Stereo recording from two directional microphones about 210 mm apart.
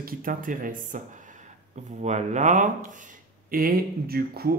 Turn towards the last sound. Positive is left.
turn(degrees=-45)  # may be behind; listen again after turning